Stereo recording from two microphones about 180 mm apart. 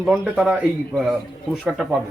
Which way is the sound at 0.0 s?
Centre (ahead or behind).